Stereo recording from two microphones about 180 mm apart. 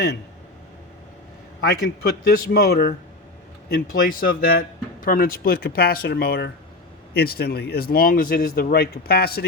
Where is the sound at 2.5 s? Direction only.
55° left (ahead or behind).